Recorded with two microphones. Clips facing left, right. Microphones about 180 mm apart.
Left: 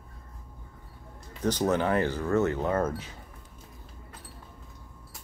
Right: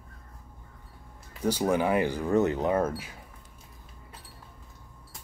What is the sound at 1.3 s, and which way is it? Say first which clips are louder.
Speech: even; 10° right (ahead or behind).